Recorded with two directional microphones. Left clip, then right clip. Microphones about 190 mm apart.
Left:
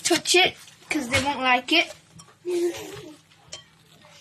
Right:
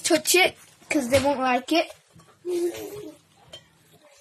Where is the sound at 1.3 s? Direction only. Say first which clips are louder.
Left 2 dB; 40° right (ahead or behind).